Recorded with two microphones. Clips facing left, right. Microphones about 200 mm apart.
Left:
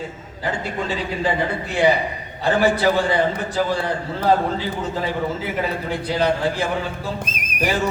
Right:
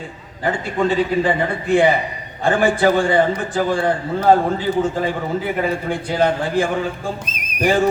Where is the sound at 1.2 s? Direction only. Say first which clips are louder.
Right 3 dB; 55° right (ahead or behind).